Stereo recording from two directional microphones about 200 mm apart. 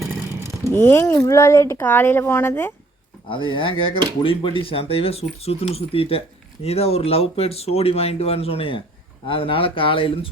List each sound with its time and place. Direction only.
0.6 s speech: 10° left (ahead or behind)
3.2 s speech: 25° left (ahead or behind)